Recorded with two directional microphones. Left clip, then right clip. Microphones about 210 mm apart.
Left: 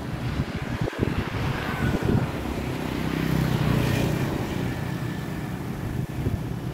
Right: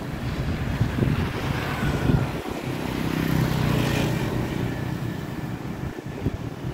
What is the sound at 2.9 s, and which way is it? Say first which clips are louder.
Vehicle: right 2 dB; 55° right (ahead or behind).